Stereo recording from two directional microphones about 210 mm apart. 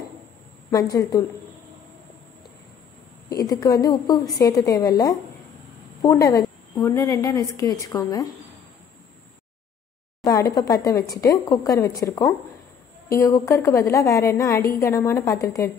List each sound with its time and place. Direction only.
0.7 s a woman's voice: 15° left (ahead or behind)
3.3 s a woman's voice: 15° left (ahead or behind)
10.2 s a woman's voice: 15° left (ahead or behind)